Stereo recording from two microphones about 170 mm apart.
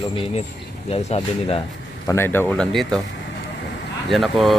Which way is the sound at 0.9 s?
35° left (ahead or behind).